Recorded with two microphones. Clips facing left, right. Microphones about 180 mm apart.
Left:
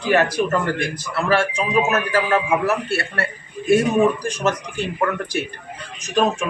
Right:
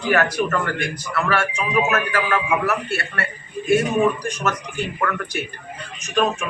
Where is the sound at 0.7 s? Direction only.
30° left (ahead or behind).